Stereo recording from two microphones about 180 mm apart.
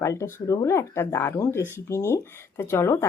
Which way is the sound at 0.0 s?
15° left (ahead or behind).